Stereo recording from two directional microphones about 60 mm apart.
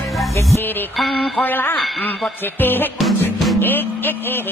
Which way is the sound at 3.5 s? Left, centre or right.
Left.